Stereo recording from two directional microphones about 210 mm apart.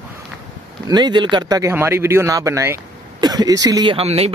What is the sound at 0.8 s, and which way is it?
Speech, 20° right (ahead or behind).